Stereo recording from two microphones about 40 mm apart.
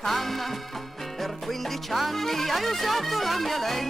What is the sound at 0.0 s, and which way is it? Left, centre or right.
Music, centre.